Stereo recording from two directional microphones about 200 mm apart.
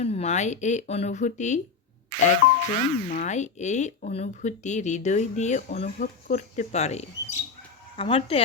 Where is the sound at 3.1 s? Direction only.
40° left (ahead or behind).